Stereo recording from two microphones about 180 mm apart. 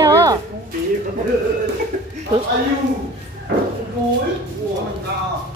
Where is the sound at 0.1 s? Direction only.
20° right (ahead or behind).